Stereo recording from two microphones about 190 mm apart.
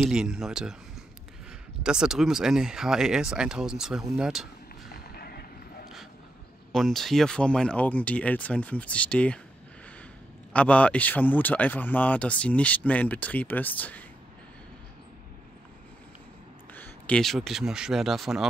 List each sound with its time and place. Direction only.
0.0 s speech: 5° right (ahead or behind)
1.8 s speech: 5° right (ahead or behind)
5.1 s vehicle: 55° left (ahead or behind)
6.7 s speech: centre (ahead or behind)
10.5 s speech: 5° left (ahead or behind)
16.7 s speech: 10° left (ahead or behind)